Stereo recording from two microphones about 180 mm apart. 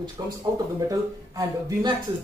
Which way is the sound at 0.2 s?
25° right (ahead or behind).